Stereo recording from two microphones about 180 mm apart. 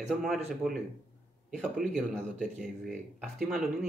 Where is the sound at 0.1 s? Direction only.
Centre (ahead or behind).